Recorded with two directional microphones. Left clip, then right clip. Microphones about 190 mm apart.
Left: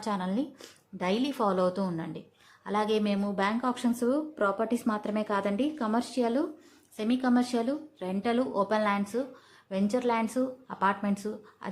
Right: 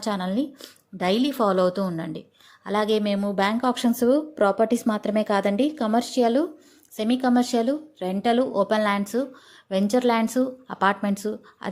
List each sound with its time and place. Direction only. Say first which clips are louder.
0.0 s speech: right 5 dB; 25° right (ahead or behind)